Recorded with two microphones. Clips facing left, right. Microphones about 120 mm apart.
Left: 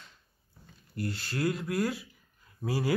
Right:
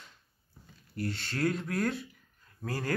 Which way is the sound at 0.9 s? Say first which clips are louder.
Left 1 dB; centre (ahead or behind).